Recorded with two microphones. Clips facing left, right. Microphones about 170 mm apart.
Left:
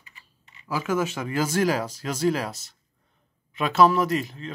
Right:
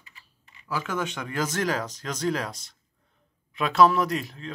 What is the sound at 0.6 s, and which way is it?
Speech, 10° left (ahead or behind).